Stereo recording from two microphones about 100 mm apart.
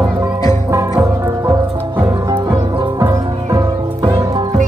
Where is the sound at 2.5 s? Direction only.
45° right (ahead or behind).